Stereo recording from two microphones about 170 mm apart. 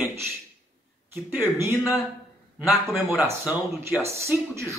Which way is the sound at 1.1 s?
10° right (ahead or behind).